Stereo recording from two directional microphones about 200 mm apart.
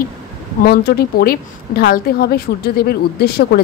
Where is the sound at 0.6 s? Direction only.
50° left (ahead or behind).